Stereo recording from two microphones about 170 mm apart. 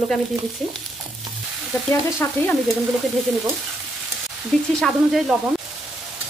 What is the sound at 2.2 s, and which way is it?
Speech, 15° left (ahead or behind).